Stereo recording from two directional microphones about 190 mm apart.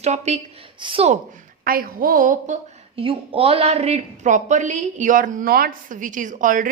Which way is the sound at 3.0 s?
30° right (ahead or behind).